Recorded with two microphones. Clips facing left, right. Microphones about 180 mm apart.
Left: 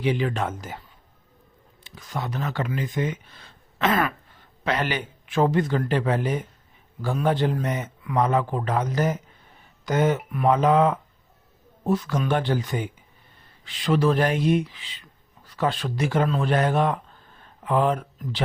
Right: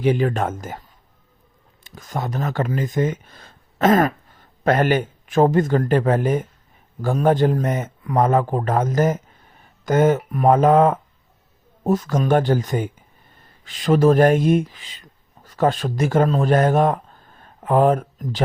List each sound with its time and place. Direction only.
0.0 s a man's voice: 45° right (ahead or behind)
1.8 s a man's voice: 45° right (ahead or behind)